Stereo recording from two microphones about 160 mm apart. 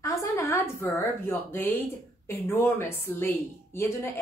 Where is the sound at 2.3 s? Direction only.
15° left (ahead or behind).